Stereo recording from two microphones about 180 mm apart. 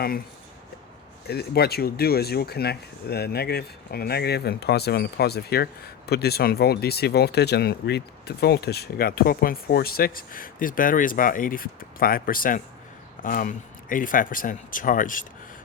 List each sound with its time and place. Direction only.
1.3 s speech: 60° left (ahead or behind)